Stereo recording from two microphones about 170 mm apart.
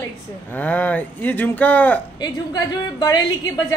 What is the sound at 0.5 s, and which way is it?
Speech, 10° left (ahead or behind).